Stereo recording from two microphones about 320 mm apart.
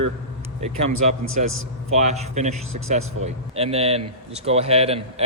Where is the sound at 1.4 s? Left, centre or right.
Right.